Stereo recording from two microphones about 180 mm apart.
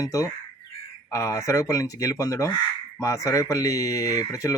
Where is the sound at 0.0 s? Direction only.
20° left (ahead or behind).